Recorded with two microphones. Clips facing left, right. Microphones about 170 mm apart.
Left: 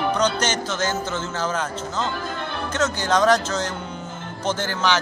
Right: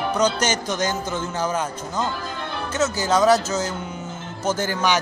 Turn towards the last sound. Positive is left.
turn(degrees=-10)  # may be behind; listen again after turning